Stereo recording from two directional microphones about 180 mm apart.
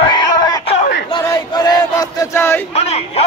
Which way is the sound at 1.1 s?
20° left (ahead or behind).